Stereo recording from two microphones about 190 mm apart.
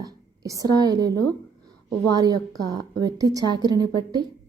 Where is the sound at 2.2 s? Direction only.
20° right (ahead or behind).